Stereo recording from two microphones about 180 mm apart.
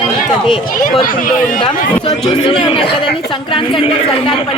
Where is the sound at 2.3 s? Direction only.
30° left (ahead or behind).